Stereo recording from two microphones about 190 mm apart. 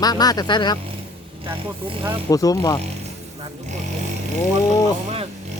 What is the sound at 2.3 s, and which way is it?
Speech, 20° left (ahead or behind).